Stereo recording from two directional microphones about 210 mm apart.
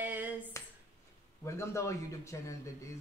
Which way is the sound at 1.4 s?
15° left (ahead or behind).